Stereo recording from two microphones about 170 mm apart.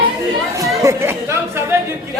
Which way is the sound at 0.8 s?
15° right (ahead or behind).